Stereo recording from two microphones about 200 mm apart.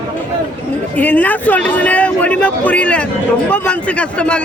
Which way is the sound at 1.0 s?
10° left (ahead or behind).